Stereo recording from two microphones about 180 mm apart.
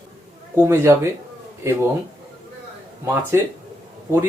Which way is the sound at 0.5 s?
15° right (ahead or behind).